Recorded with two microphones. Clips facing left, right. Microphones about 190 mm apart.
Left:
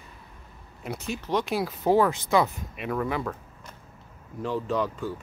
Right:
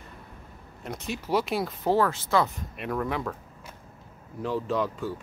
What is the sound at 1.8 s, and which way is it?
Speech, 15° left (ahead or behind).